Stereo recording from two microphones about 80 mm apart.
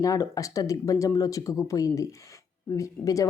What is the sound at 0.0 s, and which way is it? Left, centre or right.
A woman's voice, left.